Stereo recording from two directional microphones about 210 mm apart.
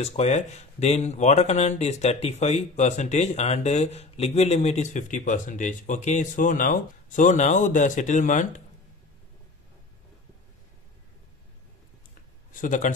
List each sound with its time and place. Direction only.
0.0 s speech: 30° left (ahead or behind)
12.5 s speech: 40° left (ahead or behind)